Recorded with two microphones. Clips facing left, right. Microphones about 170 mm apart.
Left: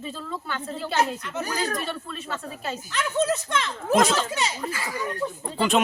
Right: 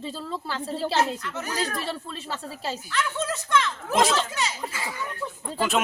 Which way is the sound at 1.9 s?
30° right (ahead or behind).